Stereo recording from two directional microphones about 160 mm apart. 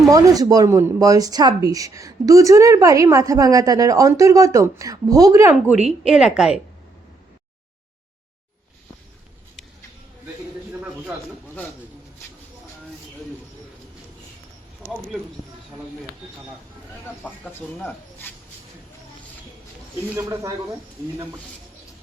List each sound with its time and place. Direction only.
0.1 s a woman's voice: 20° right (ahead or behind); by 6.6 s 5° right (ahead or behind)
17.2 s speech: 10° left (ahead or behind)
20.1 s speech: 20° right (ahead or behind)